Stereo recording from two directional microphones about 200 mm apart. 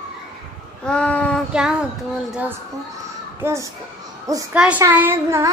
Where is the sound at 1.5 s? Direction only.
5° right (ahead or behind).